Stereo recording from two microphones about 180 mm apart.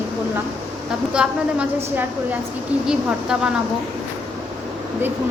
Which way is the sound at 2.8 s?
5° right (ahead or behind).